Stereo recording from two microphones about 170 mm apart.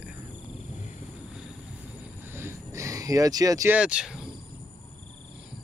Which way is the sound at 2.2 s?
15° right (ahead or behind).